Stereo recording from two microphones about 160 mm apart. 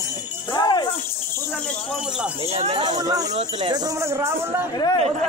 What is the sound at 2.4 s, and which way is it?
Speech, 40° right (ahead or behind).